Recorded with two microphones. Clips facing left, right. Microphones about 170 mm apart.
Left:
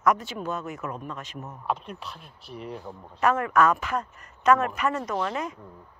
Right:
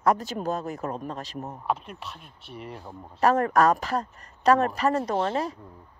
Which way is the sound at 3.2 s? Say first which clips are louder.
Right 1 dB; 35° right (ahead or behind).